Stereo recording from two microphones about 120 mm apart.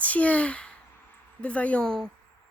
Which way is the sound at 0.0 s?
10° left (ahead or behind).